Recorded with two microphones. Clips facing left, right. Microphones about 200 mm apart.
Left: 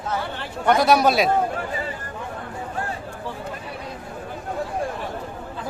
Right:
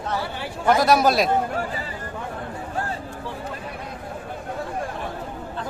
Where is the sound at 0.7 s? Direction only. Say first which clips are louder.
Even; centre (ahead or behind).